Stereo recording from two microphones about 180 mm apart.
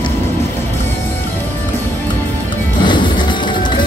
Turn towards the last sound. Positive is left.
turn(degrees=25)  # may be behind; listen again after turning